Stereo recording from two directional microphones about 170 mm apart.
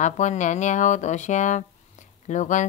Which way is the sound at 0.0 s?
45° left (ahead or behind).